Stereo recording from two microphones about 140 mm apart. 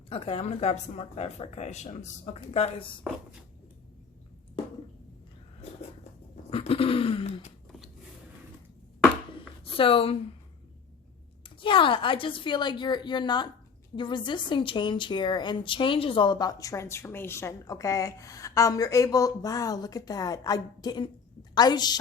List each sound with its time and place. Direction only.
0.1 s speech: 45° left (ahead or behind)
6.5 s a sound: 40° left (ahead or behind)
9.7 s a woman's voice: 40° left (ahead or behind)
11.4 s a woman's voice: 35° left (ahead or behind)